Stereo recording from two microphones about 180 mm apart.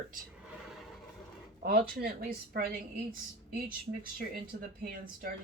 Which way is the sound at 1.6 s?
50° right (ahead or behind).